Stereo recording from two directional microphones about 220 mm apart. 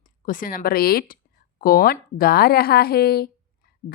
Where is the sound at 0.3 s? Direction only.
40° left (ahead or behind).